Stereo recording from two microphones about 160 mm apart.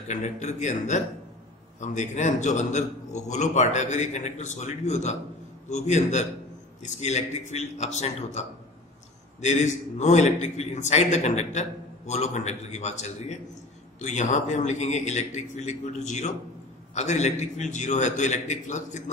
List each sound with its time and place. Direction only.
0.1 s a man's voice: 45° left (ahead or behind)